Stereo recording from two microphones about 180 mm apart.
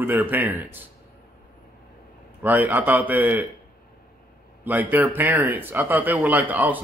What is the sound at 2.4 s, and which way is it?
Speech, 10° right (ahead or behind).